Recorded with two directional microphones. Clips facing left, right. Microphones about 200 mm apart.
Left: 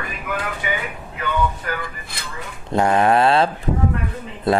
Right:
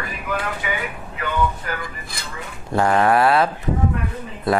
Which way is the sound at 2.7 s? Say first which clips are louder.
Left 1 dB; 20° left (ahead or behind).